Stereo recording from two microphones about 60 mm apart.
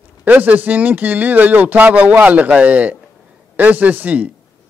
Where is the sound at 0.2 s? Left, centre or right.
Right.